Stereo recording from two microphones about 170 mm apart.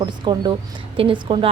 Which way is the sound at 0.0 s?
25° right (ahead or behind).